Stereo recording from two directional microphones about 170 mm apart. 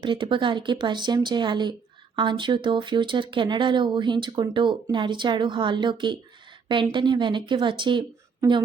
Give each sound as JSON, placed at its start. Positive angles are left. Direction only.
{"t": 0.0, "sound": "speech", "side_deg": -30}